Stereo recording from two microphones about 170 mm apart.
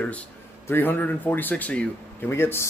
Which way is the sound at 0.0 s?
10° left (ahead or behind).